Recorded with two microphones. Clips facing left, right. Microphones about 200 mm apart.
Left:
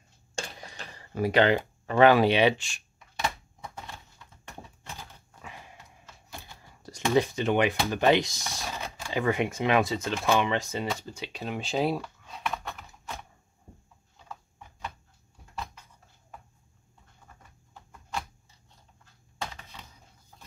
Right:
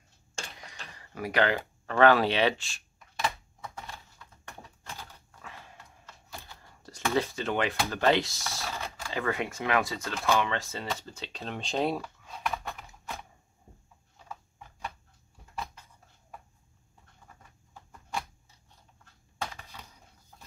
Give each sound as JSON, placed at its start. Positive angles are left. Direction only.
{"t": 0.7, "sound": "speech", "side_deg": 30}
{"t": 4.9, "sound": "typewriter", "side_deg": 15}
{"t": 6.4, "sound": "typing", "side_deg": 15}
{"t": 7.9, "sound": "speech", "side_deg": 15}